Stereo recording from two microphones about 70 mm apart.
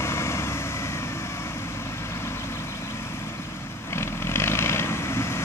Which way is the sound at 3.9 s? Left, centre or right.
Left.